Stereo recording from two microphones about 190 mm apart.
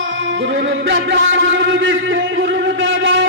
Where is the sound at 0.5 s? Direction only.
65° right (ahead or behind).